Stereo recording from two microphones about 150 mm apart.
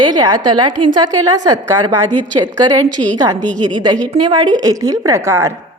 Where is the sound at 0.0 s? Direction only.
25° right (ahead or behind).